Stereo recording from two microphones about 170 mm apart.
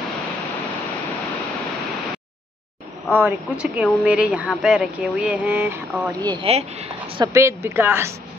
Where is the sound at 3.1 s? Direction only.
10° right (ahead or behind).